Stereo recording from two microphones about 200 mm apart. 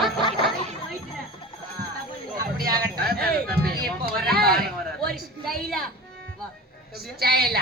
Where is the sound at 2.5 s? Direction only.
50° right (ahead or behind).